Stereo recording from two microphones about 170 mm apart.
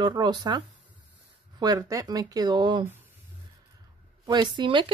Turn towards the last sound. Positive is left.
turn(degrees=-30)  # may be behind; listen again after turning